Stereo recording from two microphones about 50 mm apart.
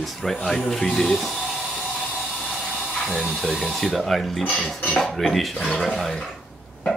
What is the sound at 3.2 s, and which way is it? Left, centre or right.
Speech, centre.